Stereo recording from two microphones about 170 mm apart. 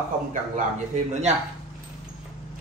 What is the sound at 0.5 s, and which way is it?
Speech, 45° right (ahead or behind).